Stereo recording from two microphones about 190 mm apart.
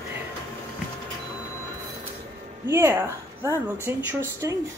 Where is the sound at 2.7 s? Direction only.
10° right (ahead or behind).